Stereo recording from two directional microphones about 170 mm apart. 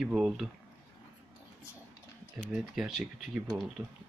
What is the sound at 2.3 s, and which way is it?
Speech, centre (ahead or behind).